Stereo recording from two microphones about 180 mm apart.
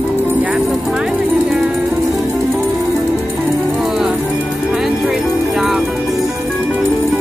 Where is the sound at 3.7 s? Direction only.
Centre (ahead or behind).